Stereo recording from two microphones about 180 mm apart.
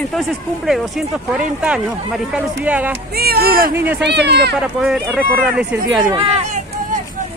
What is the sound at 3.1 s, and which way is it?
Speech, 60° right (ahead or behind).